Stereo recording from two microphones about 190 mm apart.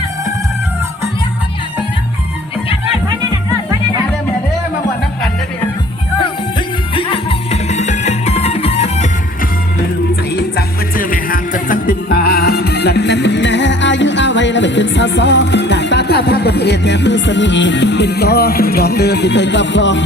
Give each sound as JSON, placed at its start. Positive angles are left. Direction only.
{"t": 6.9, "sound": "music", "side_deg": 30}
{"t": 10.9, "sound": "music", "side_deg": 45}